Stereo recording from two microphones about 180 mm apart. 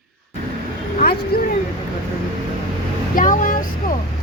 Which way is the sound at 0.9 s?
55° left (ahead or behind).